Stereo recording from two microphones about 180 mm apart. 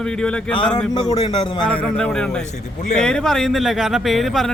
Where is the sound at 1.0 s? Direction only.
20° left (ahead or behind).